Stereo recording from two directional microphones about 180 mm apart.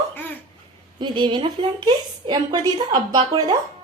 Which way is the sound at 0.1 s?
10° left (ahead or behind).